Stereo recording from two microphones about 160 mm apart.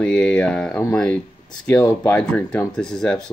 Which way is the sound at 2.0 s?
5° left (ahead or behind).